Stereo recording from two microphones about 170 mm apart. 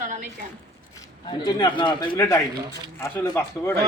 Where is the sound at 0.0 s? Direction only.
50° right (ahead or behind).